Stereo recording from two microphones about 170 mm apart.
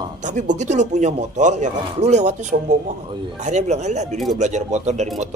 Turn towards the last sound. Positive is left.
turn(degrees=-40)  # may be behind; listen again after turning